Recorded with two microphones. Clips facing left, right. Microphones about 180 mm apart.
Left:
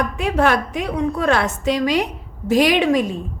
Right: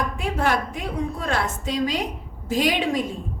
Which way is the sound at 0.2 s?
75° left (ahead or behind).